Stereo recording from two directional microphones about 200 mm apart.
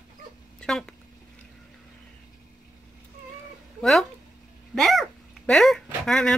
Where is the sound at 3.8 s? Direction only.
Centre (ahead or behind).